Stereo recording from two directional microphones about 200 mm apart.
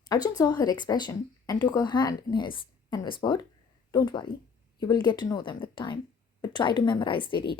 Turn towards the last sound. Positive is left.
turn(degrees=25)  # may be behind; listen again after turning